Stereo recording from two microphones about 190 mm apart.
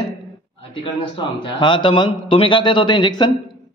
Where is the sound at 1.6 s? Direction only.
25° left (ahead or behind).